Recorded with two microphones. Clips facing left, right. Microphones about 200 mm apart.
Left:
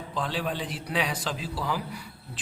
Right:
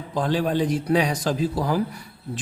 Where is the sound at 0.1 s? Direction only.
45° right (ahead or behind).